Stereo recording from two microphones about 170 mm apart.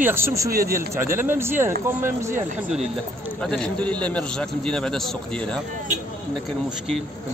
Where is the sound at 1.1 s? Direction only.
15° right (ahead or behind).